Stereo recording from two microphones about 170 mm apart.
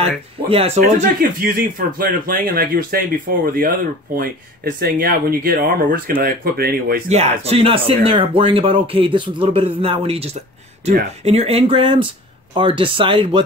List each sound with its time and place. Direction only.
0.5 s speech: 35° right (ahead or behind)
1.2 s speech: 55° right (ahead or behind)
7.1 s speech: 35° right (ahead or behind)